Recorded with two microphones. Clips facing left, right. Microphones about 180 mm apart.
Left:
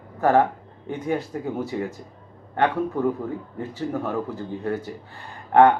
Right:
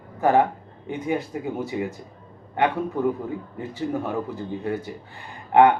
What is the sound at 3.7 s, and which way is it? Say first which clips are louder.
Speech: even; 15° right (ahead or behind).